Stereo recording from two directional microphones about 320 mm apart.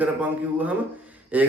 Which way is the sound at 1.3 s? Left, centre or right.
Centre.